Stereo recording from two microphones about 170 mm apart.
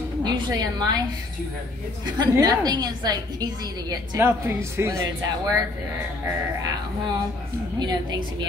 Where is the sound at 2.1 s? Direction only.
25° right (ahead or behind).